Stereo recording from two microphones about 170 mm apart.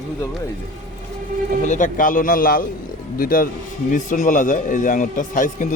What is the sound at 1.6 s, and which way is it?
A man's voice, 45° left (ahead or behind).